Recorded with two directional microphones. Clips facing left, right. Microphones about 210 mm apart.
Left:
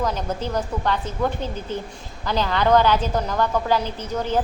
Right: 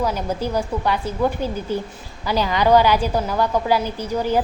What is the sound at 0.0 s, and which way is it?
A woman's voice, 10° right (ahead or behind).